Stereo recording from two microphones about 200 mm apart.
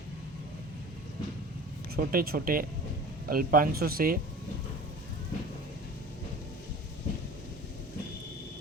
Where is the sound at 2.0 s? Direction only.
45° right (ahead or behind).